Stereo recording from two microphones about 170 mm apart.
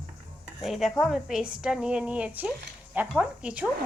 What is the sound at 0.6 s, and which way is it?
A woman's voice, centre (ahead or behind).